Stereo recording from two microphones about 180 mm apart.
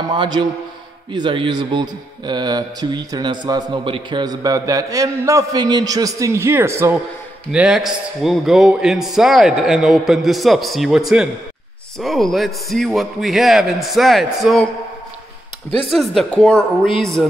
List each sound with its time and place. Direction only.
0.1 s a man's voice: 25° right (ahead or behind); by 14.7 s centre (ahead or behind)
15.9 s a man's voice: centre (ahead or behind)